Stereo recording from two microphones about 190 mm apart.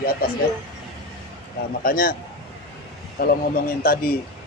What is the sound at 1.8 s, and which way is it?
Speech, 45° left (ahead or behind).